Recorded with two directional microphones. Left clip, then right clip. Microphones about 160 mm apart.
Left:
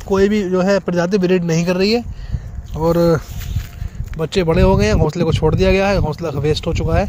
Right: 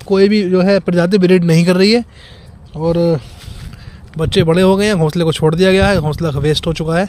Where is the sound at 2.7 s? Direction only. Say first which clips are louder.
Even; 15° right (ahead or behind).